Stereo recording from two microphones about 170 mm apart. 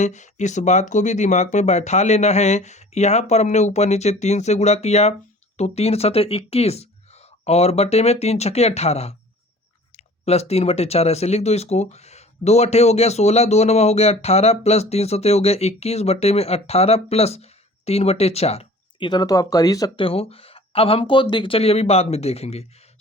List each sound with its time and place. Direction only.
0.0 s speech: 45° left (ahead or behind)
10.2 s speech: 35° left (ahead or behind); by 20.1 s 20° left (ahead or behind)
20.1 s speech: 35° left (ahead or behind)